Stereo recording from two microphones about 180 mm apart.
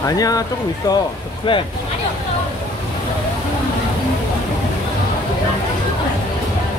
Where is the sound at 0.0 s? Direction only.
20° left (ahead or behind).